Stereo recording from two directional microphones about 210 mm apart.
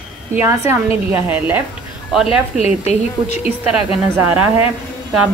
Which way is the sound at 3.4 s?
5° right (ahead or behind).